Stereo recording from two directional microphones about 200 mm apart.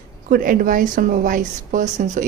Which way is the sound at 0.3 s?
40° right (ahead or behind).